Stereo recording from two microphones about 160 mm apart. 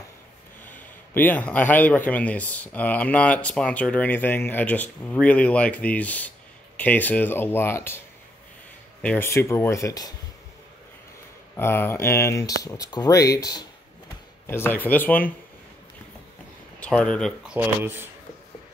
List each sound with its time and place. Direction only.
0.7 s a man's voice: 10° left (ahead or behind)
9.0 s a man's voice: 10° left (ahead or behind)
11.5 s a man's voice: 15° left (ahead or behind)
16.8 s a man's voice: 5° left (ahead or behind)
17.6 s speech: 15° right (ahead or behind)